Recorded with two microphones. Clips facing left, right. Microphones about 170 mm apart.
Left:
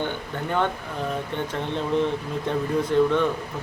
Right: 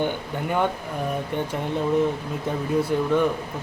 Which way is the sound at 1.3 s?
10° right (ahead or behind).